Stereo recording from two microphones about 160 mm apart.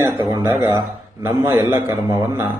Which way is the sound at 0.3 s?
20° right (ahead or behind).